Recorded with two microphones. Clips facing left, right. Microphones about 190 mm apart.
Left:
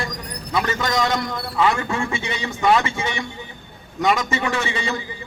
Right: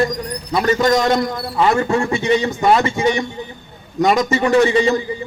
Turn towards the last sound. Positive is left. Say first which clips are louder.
# right 12 dB
turn(degrees=-35)  # may be behind; listen again after turning